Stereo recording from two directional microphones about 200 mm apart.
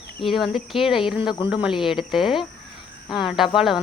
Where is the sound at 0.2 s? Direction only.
Centre (ahead or behind).